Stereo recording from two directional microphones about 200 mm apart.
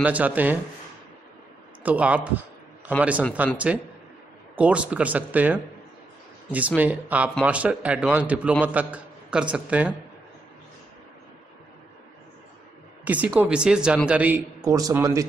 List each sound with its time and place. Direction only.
0.0 s a man's voice: 5° right (ahead or behind)
1.8 s a man's voice: 5° right (ahead or behind)
13.0 s a man's voice: 5° right (ahead or behind)